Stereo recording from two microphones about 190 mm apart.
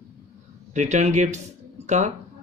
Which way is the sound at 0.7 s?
35° right (ahead or behind).